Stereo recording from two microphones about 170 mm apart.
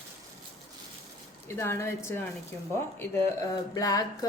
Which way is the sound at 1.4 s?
15° left (ahead or behind).